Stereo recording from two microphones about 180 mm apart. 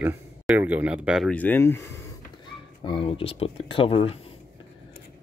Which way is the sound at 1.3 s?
10° left (ahead or behind).